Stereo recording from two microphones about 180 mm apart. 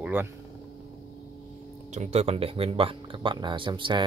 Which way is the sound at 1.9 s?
40° right (ahead or behind).